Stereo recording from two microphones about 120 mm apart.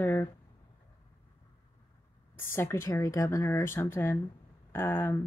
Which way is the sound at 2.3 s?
20° left (ahead or behind).